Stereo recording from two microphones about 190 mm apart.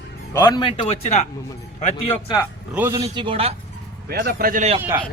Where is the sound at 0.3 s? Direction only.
20° left (ahead or behind).